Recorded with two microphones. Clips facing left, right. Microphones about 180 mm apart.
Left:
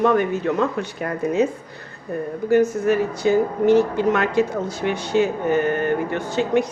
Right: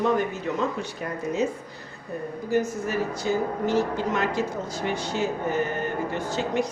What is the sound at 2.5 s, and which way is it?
Speech, 60° left (ahead or behind).